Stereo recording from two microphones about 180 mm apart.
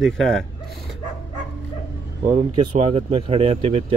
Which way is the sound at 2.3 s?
35° right (ahead or behind).